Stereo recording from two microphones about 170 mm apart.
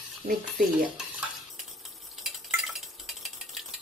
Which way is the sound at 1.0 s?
Centre (ahead or behind).